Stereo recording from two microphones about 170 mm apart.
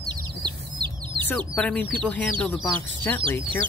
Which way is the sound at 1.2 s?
10° left (ahead or behind).